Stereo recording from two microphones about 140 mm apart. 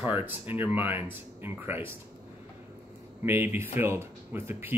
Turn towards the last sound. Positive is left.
turn(degrees=-15)  # may be behind; listen again after turning